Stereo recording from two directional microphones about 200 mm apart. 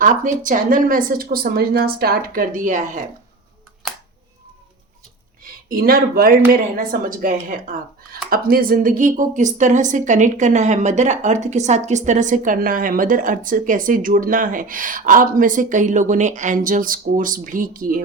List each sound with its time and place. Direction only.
0.0 s speech: 40° right (ahead or behind)
5.6 s speech: 45° right (ahead or behind)